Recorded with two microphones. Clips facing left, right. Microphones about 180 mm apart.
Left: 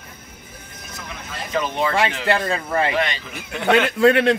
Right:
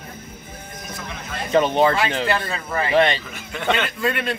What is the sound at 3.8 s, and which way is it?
Speech, 75° left (ahead or behind).